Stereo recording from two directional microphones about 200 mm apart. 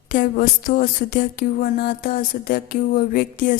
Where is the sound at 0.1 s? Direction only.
45° left (ahead or behind).